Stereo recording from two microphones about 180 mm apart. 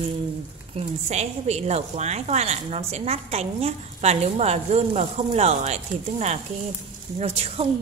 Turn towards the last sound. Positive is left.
turn(degrees=-35)  # may be behind; listen again after turning